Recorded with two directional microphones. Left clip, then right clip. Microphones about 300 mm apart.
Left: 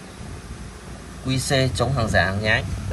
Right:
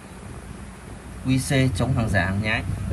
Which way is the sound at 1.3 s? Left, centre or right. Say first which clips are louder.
Left 2 dB; centre.